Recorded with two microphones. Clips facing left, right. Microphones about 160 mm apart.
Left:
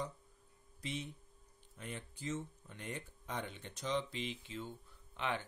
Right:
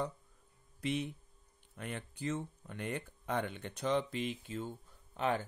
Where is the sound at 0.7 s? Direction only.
60° right (ahead or behind).